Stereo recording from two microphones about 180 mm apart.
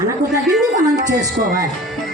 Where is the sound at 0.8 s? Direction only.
20° right (ahead or behind).